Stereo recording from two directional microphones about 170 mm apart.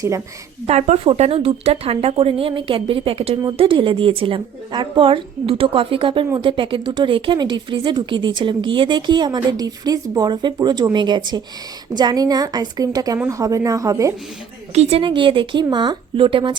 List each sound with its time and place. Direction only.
0.7 s a woman's voice: 40° right (ahead or behind); by 14.1 s 20° right (ahead or behind)
14.8 s a woman's voice: 35° right (ahead or behind)